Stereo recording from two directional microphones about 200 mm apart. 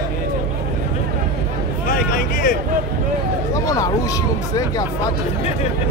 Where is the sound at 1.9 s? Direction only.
45° left (ahead or behind).